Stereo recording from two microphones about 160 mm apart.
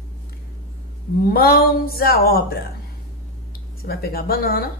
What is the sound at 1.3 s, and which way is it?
Speech, 65° left (ahead or behind).